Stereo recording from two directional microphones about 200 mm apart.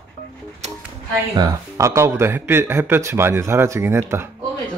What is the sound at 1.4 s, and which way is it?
Speech, 15° right (ahead or behind).